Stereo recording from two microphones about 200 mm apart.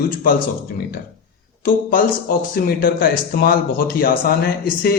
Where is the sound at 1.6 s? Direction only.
45° left (ahead or behind).